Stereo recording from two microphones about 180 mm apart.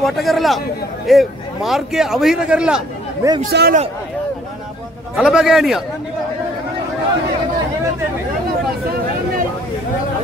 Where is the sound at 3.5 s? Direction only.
70° right (ahead or behind).